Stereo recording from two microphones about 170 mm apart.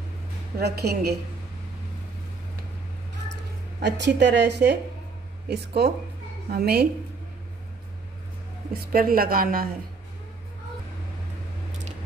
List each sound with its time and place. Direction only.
0.6 s a woman's voice: 70° right (ahead or behind)
3.8 s a woman's voice: 90° right
6.5 s a woman's voice: 65° right (ahead or behind)
8.7 s a woman's voice: 60° right (ahead or behind)